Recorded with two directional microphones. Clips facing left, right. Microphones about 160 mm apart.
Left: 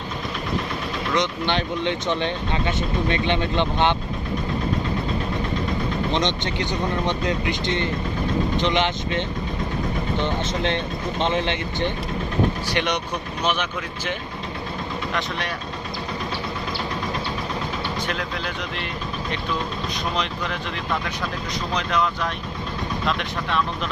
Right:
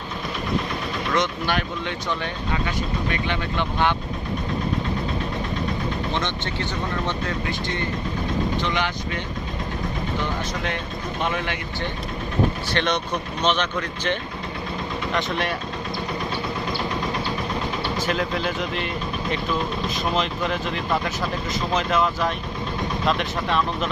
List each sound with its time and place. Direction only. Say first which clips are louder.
1.1 s speech: left 1 dB; 20° left (ahead or behind)
6.1 s speech: left 3 dB; 20° left (ahead or behind)
12.7 s speech: right 1 dB; 15° left (ahead or behind)
15.1 s speech: right 5 dB; centre (ahead or behind)
18.0 s speech: right 4 dB; centre (ahead or behind)
20.1 s speech: right 3 dB; centre (ahead or behind)